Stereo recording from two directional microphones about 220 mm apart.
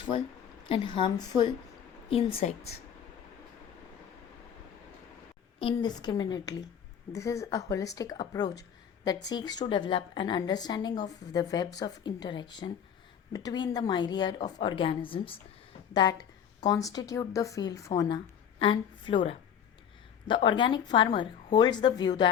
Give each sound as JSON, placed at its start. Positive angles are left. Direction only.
{"t": 0.6, "sound": "a woman's voice", "side_deg": 25}
{"t": 5.5, "sound": "a woman's voice", "side_deg": 20}